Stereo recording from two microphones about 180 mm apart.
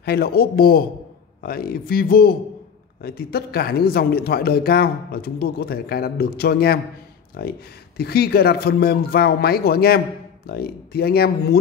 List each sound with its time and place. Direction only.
0.0 s speech: 60° left (ahead or behind)